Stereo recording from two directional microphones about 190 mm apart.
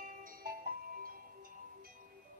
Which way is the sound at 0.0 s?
45° right (ahead or behind).